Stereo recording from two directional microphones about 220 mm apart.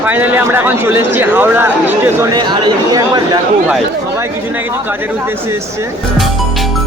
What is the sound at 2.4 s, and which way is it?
Speech, 20° right (ahead or behind).